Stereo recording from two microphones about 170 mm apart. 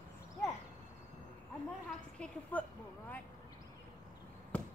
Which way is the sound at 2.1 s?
5° left (ahead or behind).